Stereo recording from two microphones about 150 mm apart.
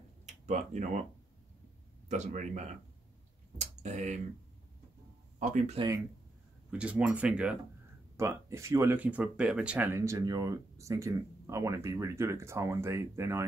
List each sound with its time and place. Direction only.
0.3 s speech: 50° right (ahead or behind)
2.0 s speech: 50° right (ahead or behind)
5.4 s speech: 55° right (ahead or behind)
6.7 s speech: 10° right (ahead or behind)
8.2 s speech: 20° right (ahead or behind)
9.9 s speech: 20° right (ahead or behind)